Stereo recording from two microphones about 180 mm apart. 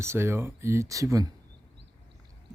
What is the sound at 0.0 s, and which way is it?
Speech, 15° right (ahead or behind).